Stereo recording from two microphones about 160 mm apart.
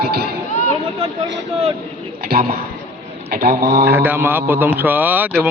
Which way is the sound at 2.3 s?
75° right (ahead or behind).